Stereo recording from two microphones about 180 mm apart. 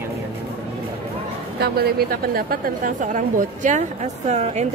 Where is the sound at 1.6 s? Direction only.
60° right (ahead or behind).